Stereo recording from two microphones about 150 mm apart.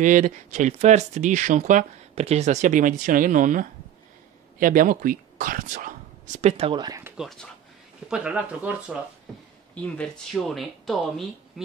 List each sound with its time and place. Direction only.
0.0 s speech: 55° right (ahead or behind)
6.5 s speech: 35° right (ahead or behind)
7.2 s speech: centre (ahead or behind)
9.8 s speech: 10° left (ahead or behind)